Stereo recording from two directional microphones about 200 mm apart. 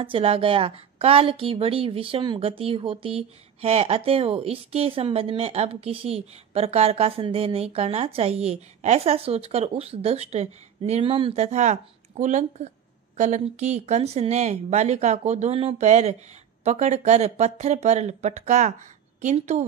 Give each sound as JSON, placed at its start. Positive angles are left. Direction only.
{"t": 0.0, "sound": "a woman's voice", "side_deg": -25}